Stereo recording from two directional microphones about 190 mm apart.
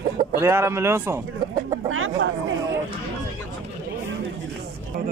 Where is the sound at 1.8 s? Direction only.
90° right.